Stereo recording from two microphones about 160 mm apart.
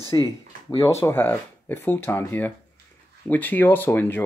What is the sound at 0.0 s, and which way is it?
Speech, 25° right (ahead or behind).